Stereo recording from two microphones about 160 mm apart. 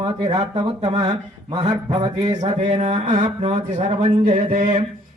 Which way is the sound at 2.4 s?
45° right (ahead or behind).